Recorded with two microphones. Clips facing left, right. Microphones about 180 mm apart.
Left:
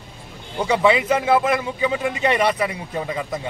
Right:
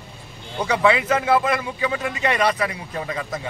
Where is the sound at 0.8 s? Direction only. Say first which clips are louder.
Left 1 dB; 20° left (ahead or behind).